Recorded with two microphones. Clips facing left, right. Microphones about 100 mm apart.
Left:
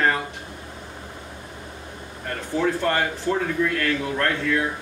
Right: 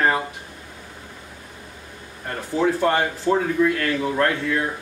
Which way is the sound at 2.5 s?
15° right (ahead or behind).